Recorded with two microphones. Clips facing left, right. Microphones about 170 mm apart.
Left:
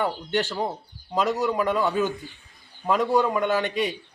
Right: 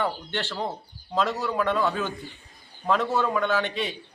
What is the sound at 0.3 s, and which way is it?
Speech, 15° left (ahead or behind).